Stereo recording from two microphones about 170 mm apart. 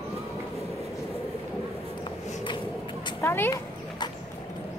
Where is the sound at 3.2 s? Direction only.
15° left (ahead or behind).